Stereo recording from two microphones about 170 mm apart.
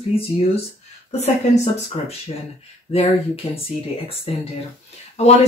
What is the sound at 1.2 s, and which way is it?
Speech, 40° left (ahead or behind).